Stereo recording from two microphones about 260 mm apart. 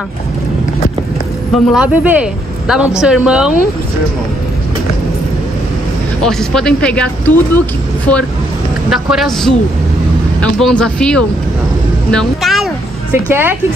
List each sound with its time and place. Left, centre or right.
1.5 s speech: centre
6.2 s speech: centre
8.9 s speech: centre